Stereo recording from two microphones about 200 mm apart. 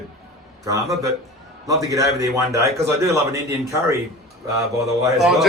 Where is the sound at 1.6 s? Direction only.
15° right (ahead or behind).